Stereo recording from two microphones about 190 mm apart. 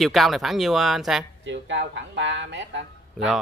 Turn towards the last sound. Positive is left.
turn(degrees=-70)  # may be behind; listen again after turning